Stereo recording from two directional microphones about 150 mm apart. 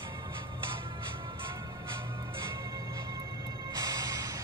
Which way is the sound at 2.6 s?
20° right (ahead or behind).